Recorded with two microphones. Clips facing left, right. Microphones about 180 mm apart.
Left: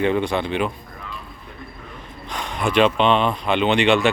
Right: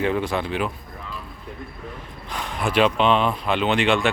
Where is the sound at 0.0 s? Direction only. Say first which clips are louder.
Left 3 dB; 5° right (ahead or behind).